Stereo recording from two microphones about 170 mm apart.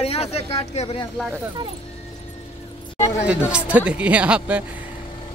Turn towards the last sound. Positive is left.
turn(degrees=-10)  # may be behind; listen again after turning